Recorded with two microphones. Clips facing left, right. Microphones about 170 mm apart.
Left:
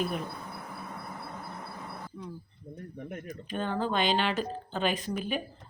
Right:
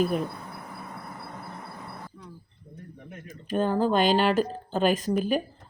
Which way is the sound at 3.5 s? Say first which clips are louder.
Right 7 dB; 40° right (ahead or behind).